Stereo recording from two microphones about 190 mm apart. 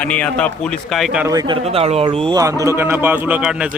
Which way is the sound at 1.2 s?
20° right (ahead or behind).